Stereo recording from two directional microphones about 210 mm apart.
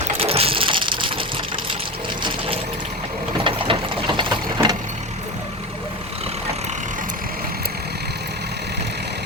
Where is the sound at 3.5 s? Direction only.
25° right (ahead or behind).